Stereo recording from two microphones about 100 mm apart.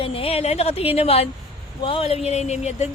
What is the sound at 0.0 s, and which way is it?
Speech, 75° left (ahead or behind).